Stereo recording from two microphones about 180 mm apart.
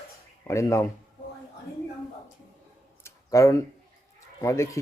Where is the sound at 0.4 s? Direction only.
15° left (ahead or behind).